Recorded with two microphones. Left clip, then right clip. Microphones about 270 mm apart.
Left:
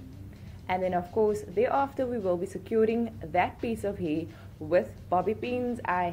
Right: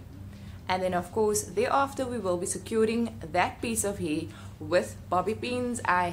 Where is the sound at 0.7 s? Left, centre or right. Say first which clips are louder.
Even; centre.